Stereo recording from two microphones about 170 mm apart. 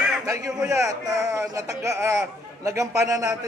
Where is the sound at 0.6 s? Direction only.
20° right (ahead or behind).